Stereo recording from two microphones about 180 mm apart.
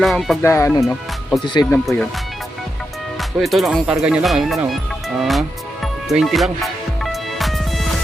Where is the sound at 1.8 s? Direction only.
Centre (ahead or behind).